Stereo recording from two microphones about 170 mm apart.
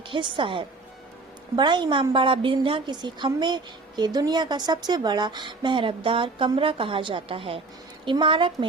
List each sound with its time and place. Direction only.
0.1 s a woman's voice: 30° right (ahead or behind)